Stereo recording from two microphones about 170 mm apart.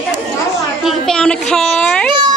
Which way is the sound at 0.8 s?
5° left (ahead or behind).